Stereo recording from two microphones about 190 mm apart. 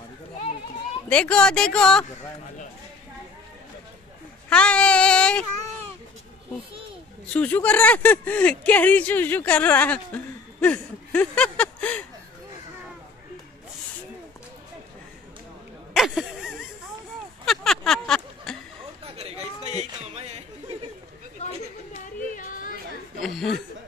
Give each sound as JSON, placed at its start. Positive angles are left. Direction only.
{"t": 1.0, "sound": "speech", "side_deg": 5}
{"t": 4.5, "sound": "speech", "side_deg": 5}
{"t": 7.3, "sound": "speech", "side_deg": 5}
{"t": 15.9, "sound": "a sound", "side_deg": 0}
{"t": 19.1, "sound": "a sound", "side_deg": -35}
{"t": 22.3, "sound": "yodeling", "side_deg": 45}
{"t": 23.2, "sound": "speech", "side_deg": 0}